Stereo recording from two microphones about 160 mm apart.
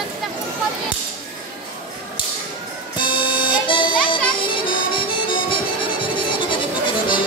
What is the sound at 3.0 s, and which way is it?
Music, 30° left (ahead or behind).